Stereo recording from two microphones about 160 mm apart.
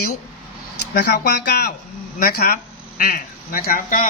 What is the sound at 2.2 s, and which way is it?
Speech, 70° left (ahead or behind).